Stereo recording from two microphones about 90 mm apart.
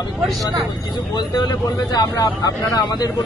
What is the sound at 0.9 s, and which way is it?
Speech, 50° left (ahead or behind).